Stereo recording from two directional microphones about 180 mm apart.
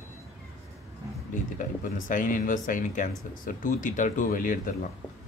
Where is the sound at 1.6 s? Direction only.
45° left (ahead or behind).